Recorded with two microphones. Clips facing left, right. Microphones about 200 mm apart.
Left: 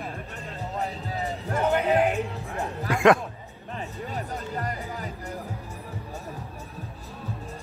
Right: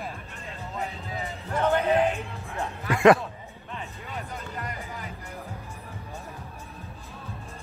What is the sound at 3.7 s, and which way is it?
Music, 40° left (ahead or behind).